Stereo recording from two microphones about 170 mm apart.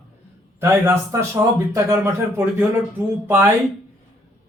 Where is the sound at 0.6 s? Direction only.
15° right (ahead or behind).